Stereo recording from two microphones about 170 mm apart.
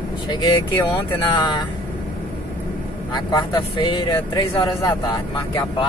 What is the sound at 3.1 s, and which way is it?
Speech, 25° left (ahead or behind).